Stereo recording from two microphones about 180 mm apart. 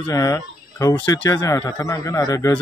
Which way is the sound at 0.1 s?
20° left (ahead or behind).